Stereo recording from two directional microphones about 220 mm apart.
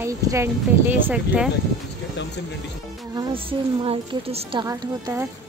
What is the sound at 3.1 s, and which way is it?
Speech, 25° right (ahead or behind).